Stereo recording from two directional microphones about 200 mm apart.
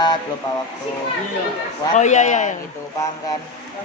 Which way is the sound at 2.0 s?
35° left (ahead or behind).